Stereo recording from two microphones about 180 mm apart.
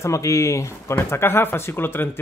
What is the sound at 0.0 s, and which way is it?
Speech, 15° left (ahead or behind).